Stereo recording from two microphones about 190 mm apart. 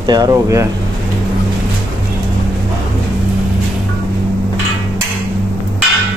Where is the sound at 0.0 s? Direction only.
20° right (ahead or behind).